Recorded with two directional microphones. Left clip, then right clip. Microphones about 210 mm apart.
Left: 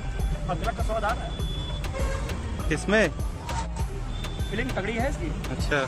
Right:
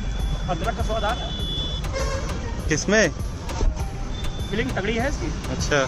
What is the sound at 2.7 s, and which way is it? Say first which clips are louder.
Speech: right 3 dB; centre (ahead or behind).